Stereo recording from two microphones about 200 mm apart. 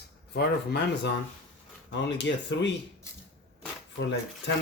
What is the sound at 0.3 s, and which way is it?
Speech, 55° left (ahead or behind).